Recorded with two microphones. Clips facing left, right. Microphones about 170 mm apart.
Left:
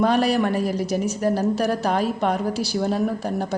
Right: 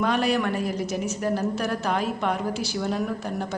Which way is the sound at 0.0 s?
35° left (ahead or behind).